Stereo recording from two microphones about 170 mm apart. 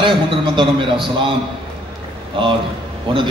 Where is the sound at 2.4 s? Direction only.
30° right (ahead or behind).